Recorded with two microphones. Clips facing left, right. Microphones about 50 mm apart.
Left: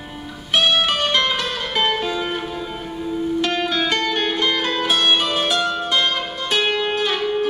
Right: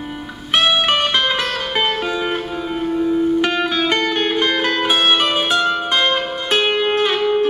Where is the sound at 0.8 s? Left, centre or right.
Right.